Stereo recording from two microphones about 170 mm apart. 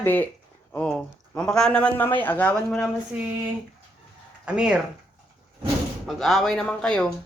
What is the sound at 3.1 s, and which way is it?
Speech, 10° right (ahead or behind).